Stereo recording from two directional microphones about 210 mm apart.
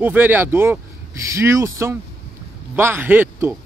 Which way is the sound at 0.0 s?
10° right (ahead or behind).